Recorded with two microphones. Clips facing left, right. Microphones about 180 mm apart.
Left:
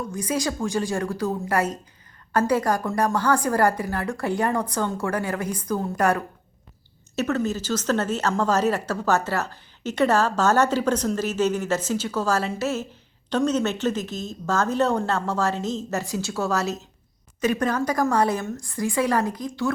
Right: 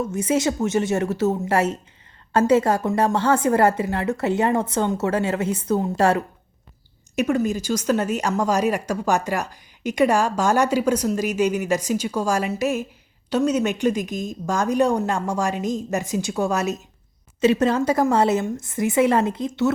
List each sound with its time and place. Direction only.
0.0 s a woman's voice: 25° right (ahead or behind)
7.2 s a woman's voice: 15° right (ahead or behind)